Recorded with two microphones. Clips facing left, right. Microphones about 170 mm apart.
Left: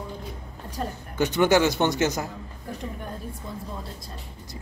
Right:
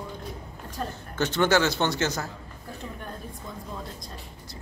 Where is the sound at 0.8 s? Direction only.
15° left (ahead or behind).